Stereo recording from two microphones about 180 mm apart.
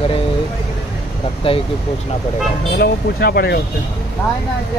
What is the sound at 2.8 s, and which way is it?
Speech, 60° left (ahead or behind).